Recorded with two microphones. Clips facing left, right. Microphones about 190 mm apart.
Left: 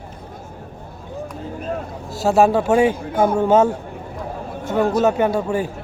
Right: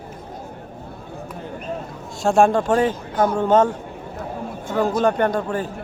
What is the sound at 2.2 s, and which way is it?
A man's voice, 5° left (ahead or behind).